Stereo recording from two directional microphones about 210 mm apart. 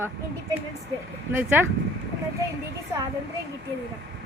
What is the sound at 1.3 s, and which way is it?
Speech, 10° right (ahead or behind).